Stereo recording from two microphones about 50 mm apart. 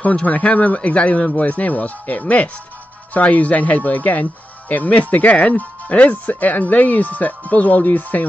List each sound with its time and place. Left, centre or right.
0.0 s speech: left